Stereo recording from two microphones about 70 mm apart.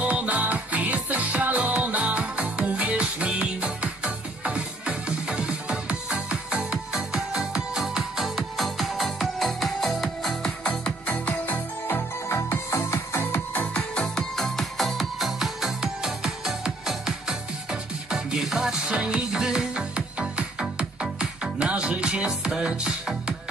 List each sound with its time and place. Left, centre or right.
0.1 s music: right; by 10.5 s centre
10.6 s music: centre
12.3 s music: left
13.7 s music: centre